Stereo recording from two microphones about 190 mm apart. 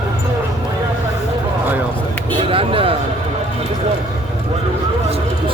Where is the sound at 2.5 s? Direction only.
30° right (ahead or behind).